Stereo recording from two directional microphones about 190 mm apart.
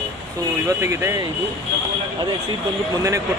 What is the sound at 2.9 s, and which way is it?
Speech, 15° right (ahead or behind).